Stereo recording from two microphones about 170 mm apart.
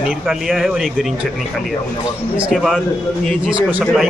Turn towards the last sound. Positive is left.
turn(degrees=-5)  # may be behind; listen again after turning